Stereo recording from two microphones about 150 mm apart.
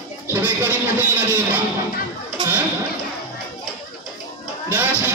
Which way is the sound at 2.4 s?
30° right (ahead or behind).